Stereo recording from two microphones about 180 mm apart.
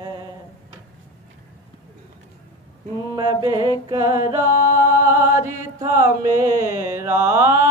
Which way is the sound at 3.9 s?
20° right (ahead or behind).